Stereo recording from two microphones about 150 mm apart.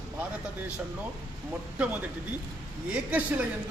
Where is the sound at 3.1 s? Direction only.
10° right (ahead or behind).